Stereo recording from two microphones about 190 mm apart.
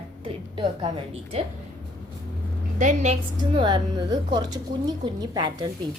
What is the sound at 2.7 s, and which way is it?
A woman's voice, 40° right (ahead or behind).